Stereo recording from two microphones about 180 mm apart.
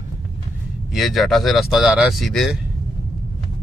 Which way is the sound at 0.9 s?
Centre (ahead or behind).